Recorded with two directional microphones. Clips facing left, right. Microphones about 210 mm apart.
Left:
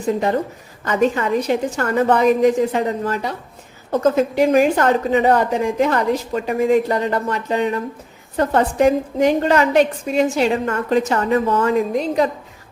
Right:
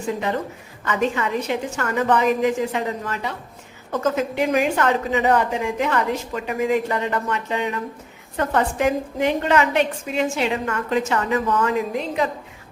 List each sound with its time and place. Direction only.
0.9 s a woman's voice: 40° left (ahead or behind)